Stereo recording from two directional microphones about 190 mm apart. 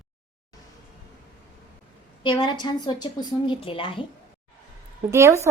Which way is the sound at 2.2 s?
25° left (ahead or behind).